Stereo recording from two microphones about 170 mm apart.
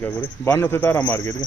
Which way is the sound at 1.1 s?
20° left (ahead or behind).